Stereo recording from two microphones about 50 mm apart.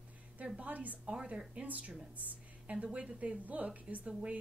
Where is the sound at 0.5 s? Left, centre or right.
Right.